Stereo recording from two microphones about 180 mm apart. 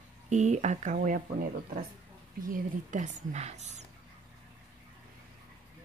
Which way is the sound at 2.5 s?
45° right (ahead or behind).